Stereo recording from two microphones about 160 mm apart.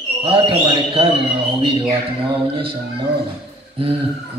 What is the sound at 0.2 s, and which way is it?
Speech, 35° right (ahead or behind).